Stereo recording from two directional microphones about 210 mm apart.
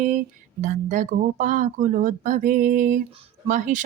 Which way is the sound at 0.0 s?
35° right (ahead or behind).